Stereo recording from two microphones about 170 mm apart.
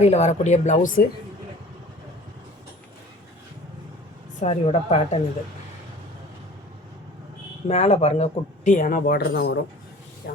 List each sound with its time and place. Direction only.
0.0 s speech: 40° left (ahead or behind)
4.4 s a woman's voice: 40° left (ahead or behind)
7.7 s speech: 40° left (ahead or behind); by 9.6 s 65° left (ahead or behind)
10.2 s speech: 90° left